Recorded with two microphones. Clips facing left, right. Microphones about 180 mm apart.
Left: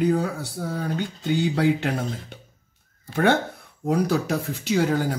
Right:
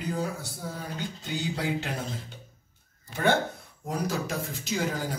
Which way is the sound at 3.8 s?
65° left (ahead or behind).